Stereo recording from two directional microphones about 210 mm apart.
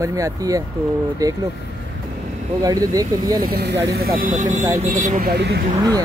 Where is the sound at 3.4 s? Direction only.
50° right (ahead or behind).